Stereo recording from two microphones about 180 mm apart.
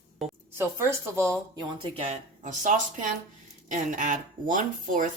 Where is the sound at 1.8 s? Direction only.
35° right (ahead or behind).